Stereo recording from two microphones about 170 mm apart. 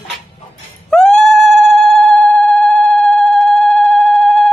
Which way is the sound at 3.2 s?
Centre (ahead or behind).